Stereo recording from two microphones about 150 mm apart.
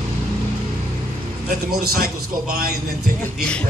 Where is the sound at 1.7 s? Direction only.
85° right.